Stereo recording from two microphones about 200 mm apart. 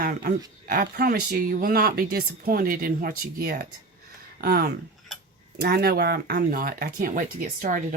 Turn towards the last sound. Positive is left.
turn(degrees=-40)  # may be behind; listen again after turning